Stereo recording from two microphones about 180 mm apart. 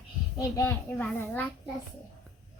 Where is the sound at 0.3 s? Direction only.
20° left (ahead or behind).